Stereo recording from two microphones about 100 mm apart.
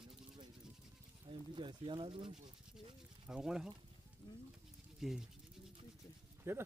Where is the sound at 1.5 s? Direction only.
55° right (ahead or behind).